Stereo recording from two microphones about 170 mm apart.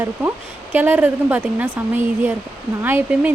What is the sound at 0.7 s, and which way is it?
Speech, 10° right (ahead or behind).